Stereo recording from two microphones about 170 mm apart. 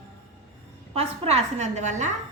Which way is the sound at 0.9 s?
35° right (ahead or behind).